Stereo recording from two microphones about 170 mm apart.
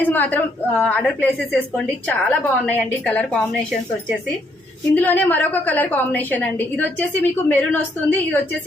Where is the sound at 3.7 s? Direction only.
Centre (ahead or behind).